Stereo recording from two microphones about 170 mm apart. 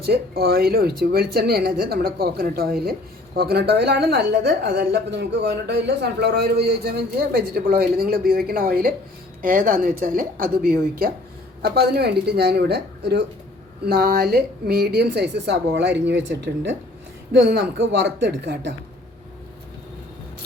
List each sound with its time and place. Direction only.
0.0 s a woman's voice: 70° right (ahead or behind)
11.6 s a woman's voice: 70° right (ahead or behind)
13.8 s a woman's voice: 65° right (ahead or behind); by 16.7 s 90° right
17.3 s speech: 75° right (ahead or behind)